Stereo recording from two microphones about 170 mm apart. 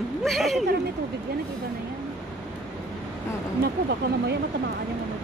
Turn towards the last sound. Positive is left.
turn(degrees=-85)